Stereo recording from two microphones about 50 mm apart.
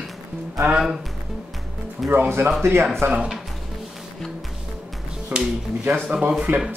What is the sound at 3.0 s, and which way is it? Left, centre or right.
Speech, right.